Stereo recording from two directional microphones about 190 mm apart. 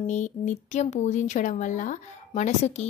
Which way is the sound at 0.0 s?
40° left (ahead or behind).